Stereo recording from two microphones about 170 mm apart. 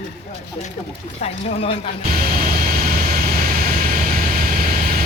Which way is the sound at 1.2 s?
35° left (ahead or behind).